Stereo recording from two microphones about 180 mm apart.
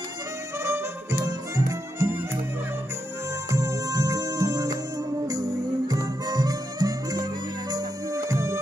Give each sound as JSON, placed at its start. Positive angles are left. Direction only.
{"t": 0.7, "sound": "music", "side_deg": -15}
{"t": 3.4, "sound": "music", "side_deg": -20}